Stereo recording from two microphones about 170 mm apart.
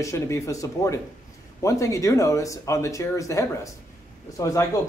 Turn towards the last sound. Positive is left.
turn(degrees=20)  # may be behind; listen again after turning